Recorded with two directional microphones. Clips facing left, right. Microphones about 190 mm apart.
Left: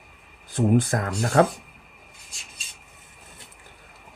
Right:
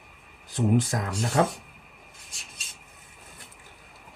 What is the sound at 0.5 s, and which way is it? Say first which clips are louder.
Speech: left 3 dB; 55° left (ahead or behind).